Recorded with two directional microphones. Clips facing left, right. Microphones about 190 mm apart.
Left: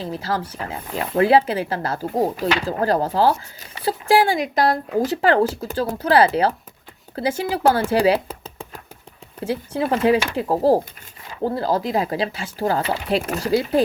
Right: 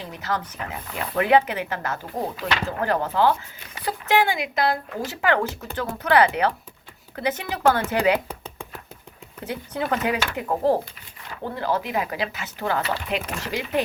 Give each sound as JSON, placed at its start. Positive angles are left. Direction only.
{"t": 0.0, "sound": "speech", "side_deg": 30}
{"t": 9.4, "sound": "speech", "side_deg": 25}